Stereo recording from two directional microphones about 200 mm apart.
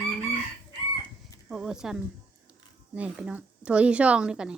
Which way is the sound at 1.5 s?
5° right (ahead or behind).